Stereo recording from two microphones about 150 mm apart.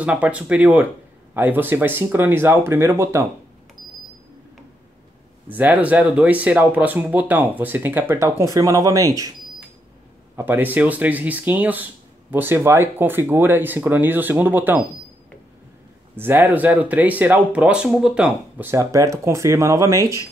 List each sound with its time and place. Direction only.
0.0 s speech: 10° right (ahead or behind)
5.5 s speech: 10° right (ahead or behind)
10.3 s speech: 15° right (ahead or behind)
16.2 s speech: 15° right (ahead or behind)